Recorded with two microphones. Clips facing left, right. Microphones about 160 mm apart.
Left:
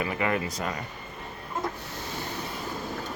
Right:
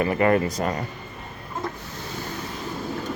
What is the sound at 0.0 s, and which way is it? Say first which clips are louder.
Speech: right 8 dB; 45° right (ahead or behind).